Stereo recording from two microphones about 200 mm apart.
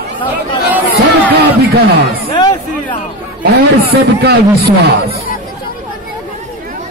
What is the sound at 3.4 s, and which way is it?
A man's voice, 55° right (ahead or behind).